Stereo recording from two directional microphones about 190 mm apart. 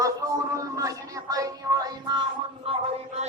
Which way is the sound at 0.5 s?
15° right (ahead or behind).